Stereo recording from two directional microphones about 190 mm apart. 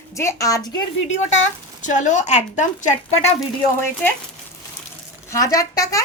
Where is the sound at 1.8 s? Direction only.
40° left (ahead or behind).